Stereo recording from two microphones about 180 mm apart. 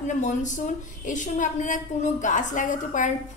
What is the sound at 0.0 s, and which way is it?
A woman's voice, 40° left (ahead or behind).